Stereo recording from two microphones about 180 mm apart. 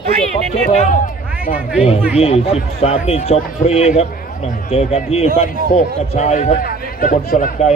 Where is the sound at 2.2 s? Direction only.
35° left (ahead or behind).